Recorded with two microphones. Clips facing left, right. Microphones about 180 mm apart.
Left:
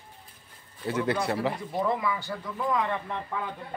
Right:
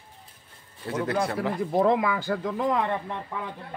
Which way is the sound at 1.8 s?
70° right (ahead or behind).